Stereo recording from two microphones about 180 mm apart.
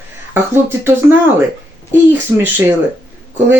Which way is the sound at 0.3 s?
15° right (ahead or behind).